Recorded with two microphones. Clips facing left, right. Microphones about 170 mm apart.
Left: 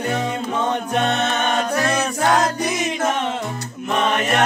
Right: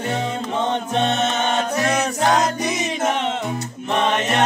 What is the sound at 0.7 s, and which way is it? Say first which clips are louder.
Music: even; 25° right (ahead or behind).